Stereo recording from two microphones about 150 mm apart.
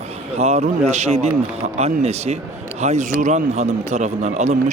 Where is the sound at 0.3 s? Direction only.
45° right (ahead or behind).